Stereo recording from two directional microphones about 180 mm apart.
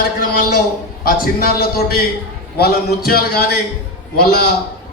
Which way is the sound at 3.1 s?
60° left (ahead or behind).